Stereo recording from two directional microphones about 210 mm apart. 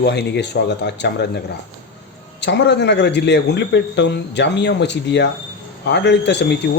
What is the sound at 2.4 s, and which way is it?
Speech, 55° left (ahead or behind).